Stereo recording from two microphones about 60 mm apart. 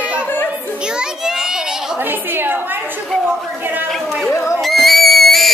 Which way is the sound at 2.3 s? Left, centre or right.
Right.